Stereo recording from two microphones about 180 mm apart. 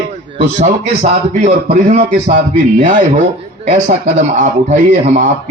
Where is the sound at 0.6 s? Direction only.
40° right (ahead or behind).